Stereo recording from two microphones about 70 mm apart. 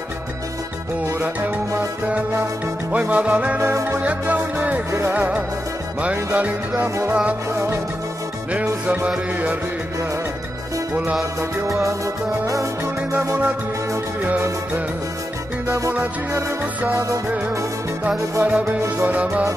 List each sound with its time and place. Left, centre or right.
2.9 s music: right
7.5 s music: right
8.8 s music: centre
18.4 s music: right